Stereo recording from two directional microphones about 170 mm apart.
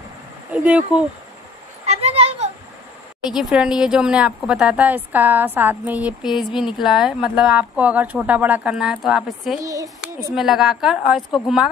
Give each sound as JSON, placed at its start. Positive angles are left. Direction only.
{"t": 0.5, "sound": "speech", "side_deg": -10}
{"t": 1.9, "sound": "a sound", "side_deg": -35}
{"t": 3.3, "sound": "speech", "side_deg": -5}
{"t": 9.6, "sound": "speech", "side_deg": -20}
{"t": 10.3, "sound": "speech", "side_deg": 0}